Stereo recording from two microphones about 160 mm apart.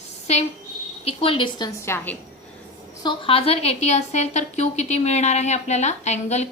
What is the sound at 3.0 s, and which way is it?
A woman's voice, 30° left (ahead or behind).